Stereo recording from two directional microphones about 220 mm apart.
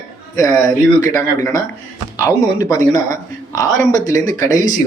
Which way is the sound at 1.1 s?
15° left (ahead or behind).